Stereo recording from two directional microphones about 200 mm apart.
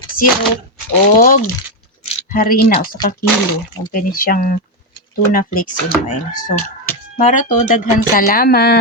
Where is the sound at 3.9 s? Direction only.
45° left (ahead or behind).